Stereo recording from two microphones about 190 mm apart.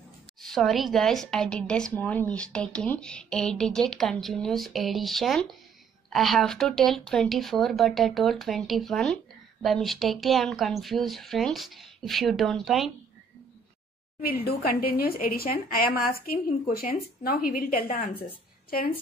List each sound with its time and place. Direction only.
0.4 s speech: centre (ahead or behind)
14.2 s speech: 55° left (ahead or behind)